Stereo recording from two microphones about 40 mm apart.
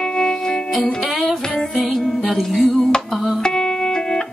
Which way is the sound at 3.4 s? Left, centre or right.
Centre.